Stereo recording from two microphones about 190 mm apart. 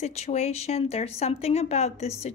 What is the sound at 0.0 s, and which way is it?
Speech, 35° left (ahead or behind).